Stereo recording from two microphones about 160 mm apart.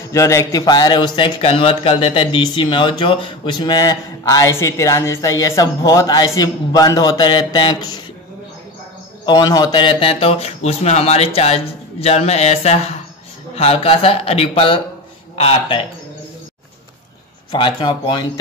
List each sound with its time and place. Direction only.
0.1 s a man's voice: 20° left (ahead or behind)
9.2 s speech: 25° left (ahead or behind)
17.5 s a man's voice: 30° left (ahead or behind)